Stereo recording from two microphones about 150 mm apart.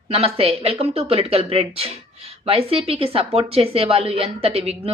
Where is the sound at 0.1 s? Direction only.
40° right (ahead or behind).